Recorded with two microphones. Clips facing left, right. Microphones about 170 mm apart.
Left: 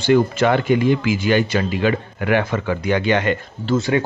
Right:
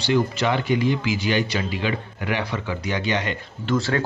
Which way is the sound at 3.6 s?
20° left (ahead or behind).